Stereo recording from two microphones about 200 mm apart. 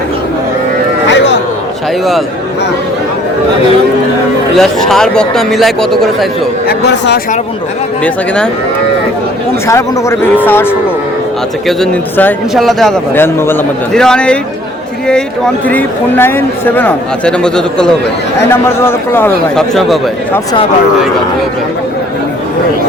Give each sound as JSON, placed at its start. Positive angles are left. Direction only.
{"t": 1.0, "sound": "music", "side_deg": 60}
{"t": 4.5, "sound": "a man's voice", "side_deg": 0}
{"t": 6.7, "sound": "speech", "side_deg": 60}
{"t": 8.0, "sound": "a man's voice", "side_deg": 5}
{"t": 9.6, "sound": "speech", "side_deg": 15}
{"t": 11.8, "sound": "a man's voice", "side_deg": 5}
{"t": 13.1, "sound": "speech", "side_deg": 10}
{"t": 15.6, "sound": "speech", "side_deg": 10}